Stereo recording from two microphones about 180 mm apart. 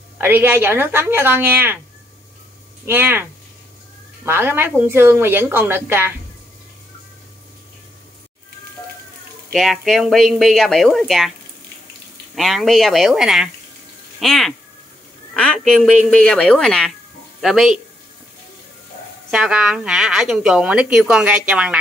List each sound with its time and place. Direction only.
0.2 s a woman's voice: 10° right (ahead or behind)
2.9 s a woman's voice: 10° right (ahead or behind)
9.5 s a woman's voice: centre (ahead or behind)
12.4 s a woman's voice: centre (ahead or behind)
19.3 s a woman's voice: 5° right (ahead or behind)